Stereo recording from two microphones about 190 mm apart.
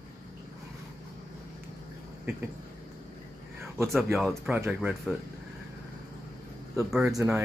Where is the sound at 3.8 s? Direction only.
Centre (ahead or behind).